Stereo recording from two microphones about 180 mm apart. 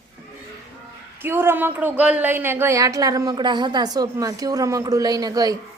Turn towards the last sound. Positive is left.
turn(degrees=-20)  # may be behind; listen again after turning